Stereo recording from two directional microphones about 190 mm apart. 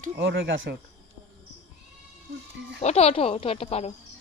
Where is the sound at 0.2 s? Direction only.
70° right (ahead or behind).